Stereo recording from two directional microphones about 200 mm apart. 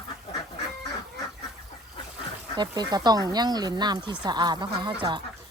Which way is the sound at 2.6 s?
20° right (ahead or behind).